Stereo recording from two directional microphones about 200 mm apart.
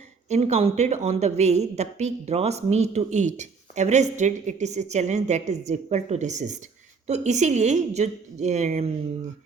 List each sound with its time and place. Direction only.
0.3 s a woman's voice: 35° right (ahead or behind)